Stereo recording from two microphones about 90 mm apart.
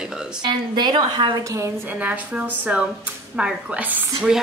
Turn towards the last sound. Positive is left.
turn(degrees=-5)  # may be behind; listen again after turning